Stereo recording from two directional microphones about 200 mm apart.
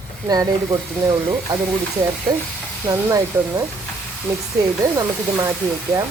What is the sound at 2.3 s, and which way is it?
Speech, 20° right (ahead or behind).